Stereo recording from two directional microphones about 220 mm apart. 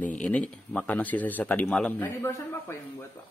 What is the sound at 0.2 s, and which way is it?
Speech, 5° left (ahead or behind).